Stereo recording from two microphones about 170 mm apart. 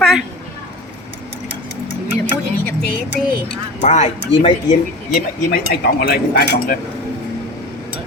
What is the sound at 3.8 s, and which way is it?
Speech, 40° left (ahead or behind).